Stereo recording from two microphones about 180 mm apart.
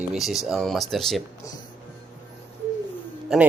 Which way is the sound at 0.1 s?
Centre (ahead or behind).